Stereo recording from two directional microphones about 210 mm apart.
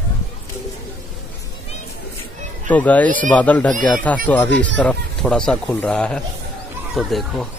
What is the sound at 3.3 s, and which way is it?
Speech, 5° left (ahead or behind).